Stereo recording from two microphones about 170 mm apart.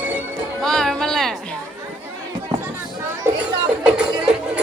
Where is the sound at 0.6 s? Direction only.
5° left (ahead or behind).